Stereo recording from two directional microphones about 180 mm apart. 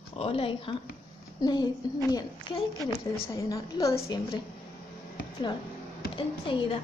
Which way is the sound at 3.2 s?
20° left (ahead or behind).